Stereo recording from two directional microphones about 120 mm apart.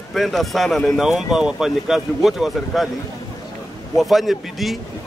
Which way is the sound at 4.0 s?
Centre (ahead or behind).